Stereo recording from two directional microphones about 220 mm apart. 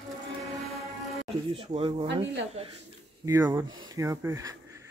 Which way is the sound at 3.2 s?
10° right (ahead or behind).